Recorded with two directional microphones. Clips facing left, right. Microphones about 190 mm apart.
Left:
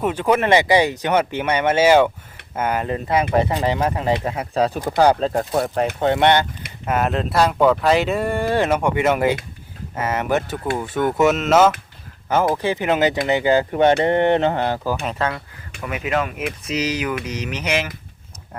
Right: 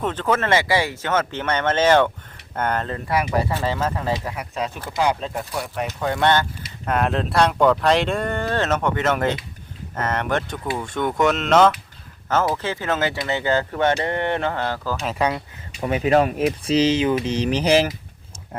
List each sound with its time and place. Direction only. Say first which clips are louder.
0.0 s speech: left 3 dB; 10° left (ahead or behind); by 5.4 s 35° left (ahead or behind)
5.5 s speech: left 8 dB; 45° left (ahead or behind)
6.0 s mantra: left 3 dB; 25° left (ahead or behind)
6.8 s speech: left 1 dB; 5° left (ahead or behind)
14.0 s mantra: left 6 dB; 20° left (ahead or behind)
15.1 s speech: right 2 dB; 15° right (ahead or behind)
15.8 s speech: right 5 dB; 30° right (ahead or behind)